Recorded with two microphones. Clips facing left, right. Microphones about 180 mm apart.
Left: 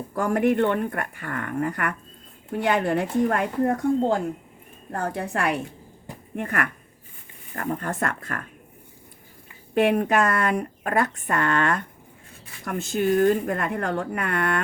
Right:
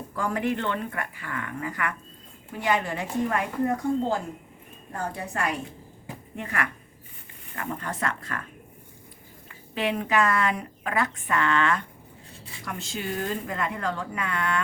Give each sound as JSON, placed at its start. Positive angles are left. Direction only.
{"t": 0.1, "sound": "a woman's voice", "side_deg": 50}
{"t": 4.9, "sound": "a woman's voice", "side_deg": 65}
{"t": 6.3, "sound": "speech", "side_deg": 50}
{"t": 9.7, "sound": "a woman's voice", "side_deg": 50}